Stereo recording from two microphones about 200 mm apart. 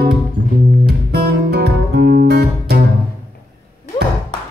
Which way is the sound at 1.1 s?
55° right (ahead or behind).